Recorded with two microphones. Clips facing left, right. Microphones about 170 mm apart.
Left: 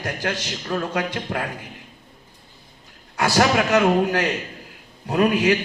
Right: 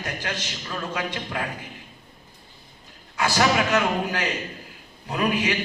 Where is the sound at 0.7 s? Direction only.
55° left (ahead or behind).